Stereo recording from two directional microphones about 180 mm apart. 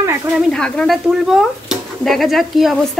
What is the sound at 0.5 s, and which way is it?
Speech, 5° left (ahead or behind).